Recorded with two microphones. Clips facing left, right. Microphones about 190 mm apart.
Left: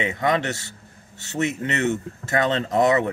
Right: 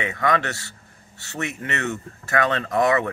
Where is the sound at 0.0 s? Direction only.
20° left (ahead or behind).